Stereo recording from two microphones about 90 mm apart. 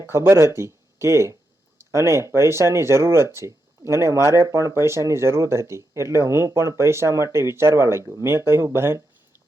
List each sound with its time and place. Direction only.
0.0 s speech: 25° right (ahead or behind)